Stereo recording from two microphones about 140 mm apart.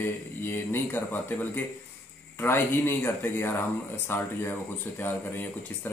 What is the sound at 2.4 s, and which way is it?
Speech, 15° left (ahead or behind).